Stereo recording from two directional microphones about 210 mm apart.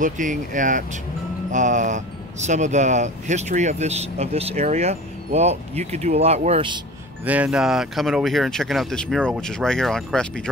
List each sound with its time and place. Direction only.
0.0 s speech: 40° right (ahead or behind)
7.2 s speech: 5° right (ahead or behind)